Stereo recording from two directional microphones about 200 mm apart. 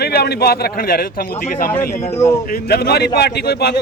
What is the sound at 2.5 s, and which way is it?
Speech, 50° left (ahead or behind).